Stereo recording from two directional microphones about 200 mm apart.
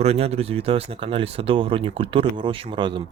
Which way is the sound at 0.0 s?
30° right (ahead or behind).